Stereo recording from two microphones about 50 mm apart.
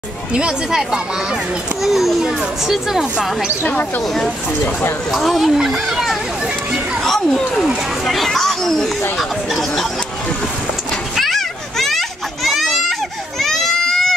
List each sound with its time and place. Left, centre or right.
0.3 s speech: centre
1.8 s a child's voice: centre
5.1 s a child's voice: centre
7.0 s a sound: centre
8.0 s a child's voice: centre
11.1 s children playing: centre
13.4 s baby cry: centre